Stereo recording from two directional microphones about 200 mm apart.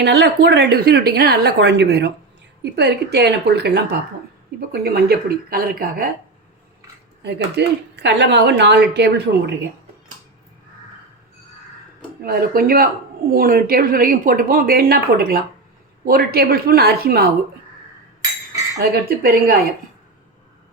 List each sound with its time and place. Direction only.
0.0 s speech: 55° right (ahead or behind)
7.2 s speech: 55° right (ahead or behind)
12.2 s speech: 50° right (ahead or behind)
18.8 s speech: 50° right (ahead or behind)